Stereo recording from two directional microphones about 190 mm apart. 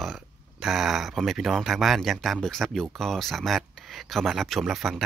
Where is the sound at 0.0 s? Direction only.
Centre (ahead or behind).